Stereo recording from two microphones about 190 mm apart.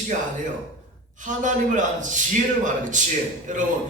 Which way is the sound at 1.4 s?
40° right (ahead or behind).